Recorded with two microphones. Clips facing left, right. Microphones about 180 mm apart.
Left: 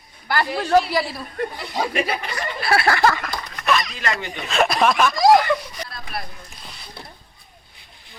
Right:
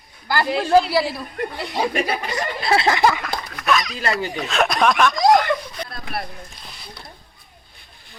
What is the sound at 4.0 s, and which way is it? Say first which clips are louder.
Speech: right 3 dB; 35° right (ahead or behind).